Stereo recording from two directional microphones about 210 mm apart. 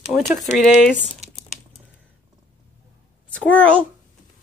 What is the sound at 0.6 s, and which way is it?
Speech, 5° left (ahead or behind).